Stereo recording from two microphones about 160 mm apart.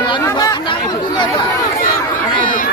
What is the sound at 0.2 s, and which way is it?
Chatter, 20° left (ahead or behind).